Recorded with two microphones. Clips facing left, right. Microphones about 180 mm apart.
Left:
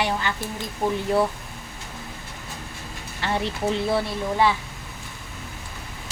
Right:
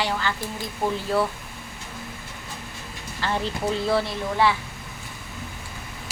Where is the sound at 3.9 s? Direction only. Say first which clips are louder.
Even; 20° left (ahead or behind).